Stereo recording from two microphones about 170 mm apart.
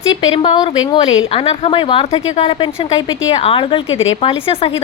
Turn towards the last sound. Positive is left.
turn(degrees=35)  # may be behind; listen again after turning